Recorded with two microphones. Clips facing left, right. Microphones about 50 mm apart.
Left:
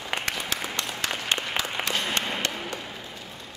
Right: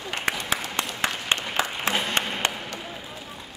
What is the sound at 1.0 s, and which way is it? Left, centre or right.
Applause, right.